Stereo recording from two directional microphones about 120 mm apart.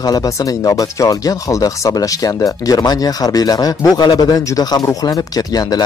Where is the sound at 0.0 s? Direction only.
30° left (ahead or behind).